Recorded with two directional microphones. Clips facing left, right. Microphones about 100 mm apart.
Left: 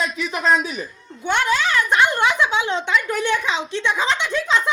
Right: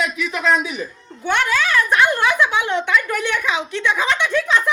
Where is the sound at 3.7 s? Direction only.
60° right (ahead or behind).